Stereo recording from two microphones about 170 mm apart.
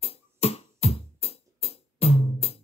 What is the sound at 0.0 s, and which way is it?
Music, 35° left (ahead or behind).